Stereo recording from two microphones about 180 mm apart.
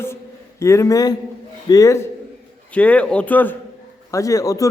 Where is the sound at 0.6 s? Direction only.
15° left (ahead or behind).